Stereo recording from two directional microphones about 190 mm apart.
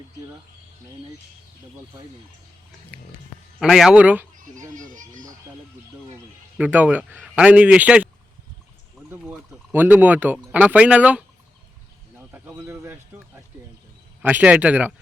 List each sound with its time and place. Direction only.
3.6 s speech: centre (ahead or behind)
4.7 s a sound: 45° right (ahead or behind)
6.6 s speech: 10° right (ahead or behind)
12.3 s speech: 15° right (ahead or behind)